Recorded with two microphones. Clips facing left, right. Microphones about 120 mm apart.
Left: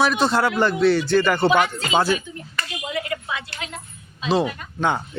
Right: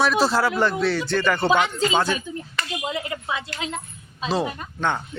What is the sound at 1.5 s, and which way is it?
Speech, 25° right (ahead or behind).